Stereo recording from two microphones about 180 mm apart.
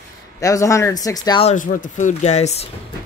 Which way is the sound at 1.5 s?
45° left (ahead or behind).